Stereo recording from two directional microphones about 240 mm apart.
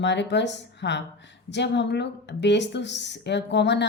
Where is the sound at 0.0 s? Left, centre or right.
Left.